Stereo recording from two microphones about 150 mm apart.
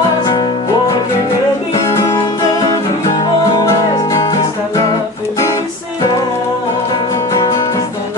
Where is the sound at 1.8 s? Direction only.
20° left (ahead or behind).